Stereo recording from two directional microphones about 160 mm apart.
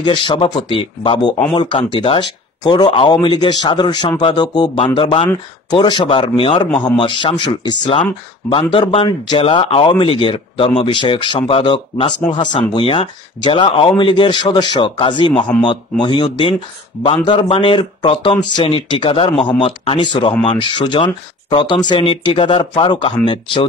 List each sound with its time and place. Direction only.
0.0 s speech: 30° left (ahead or behind)